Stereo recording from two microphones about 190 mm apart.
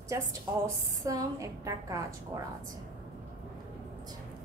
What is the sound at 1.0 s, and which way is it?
A woman's voice, 20° right (ahead or behind).